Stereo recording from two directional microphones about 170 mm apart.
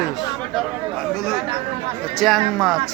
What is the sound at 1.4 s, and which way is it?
Speech, 35° right (ahead or behind).